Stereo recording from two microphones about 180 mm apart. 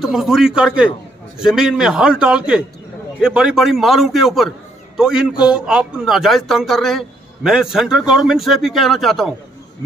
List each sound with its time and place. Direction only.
0.0 s a man's voice: centre (ahead or behind)